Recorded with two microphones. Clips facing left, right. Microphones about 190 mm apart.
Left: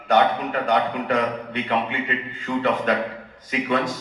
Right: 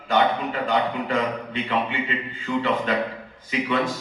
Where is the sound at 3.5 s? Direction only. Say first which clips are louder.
Left 1 dB; 45° left (ahead or behind).